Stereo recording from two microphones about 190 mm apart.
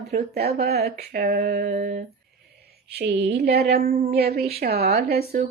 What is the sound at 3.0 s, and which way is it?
Speech, 60° right (ahead or behind).